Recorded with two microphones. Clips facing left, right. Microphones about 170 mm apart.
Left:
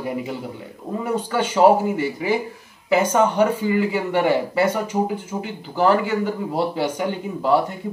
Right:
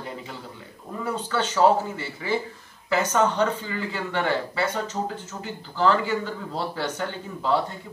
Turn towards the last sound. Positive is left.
turn(degrees=15)  # may be behind; listen again after turning